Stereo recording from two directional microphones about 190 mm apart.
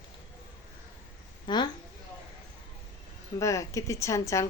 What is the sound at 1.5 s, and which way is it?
Speech, 25° left (ahead or behind).